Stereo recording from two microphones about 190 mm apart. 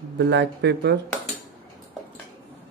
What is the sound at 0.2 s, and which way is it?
Speech, 65° right (ahead or behind).